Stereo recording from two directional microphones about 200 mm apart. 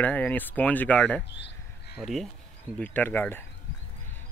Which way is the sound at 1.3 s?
60° left (ahead or behind).